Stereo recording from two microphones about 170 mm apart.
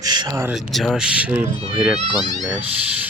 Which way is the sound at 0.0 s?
25° right (ahead or behind).